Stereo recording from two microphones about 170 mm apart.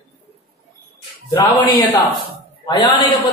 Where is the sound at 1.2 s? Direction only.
25° left (ahead or behind).